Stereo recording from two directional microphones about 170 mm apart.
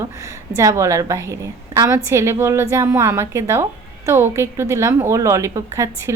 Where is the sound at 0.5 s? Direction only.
20° right (ahead or behind).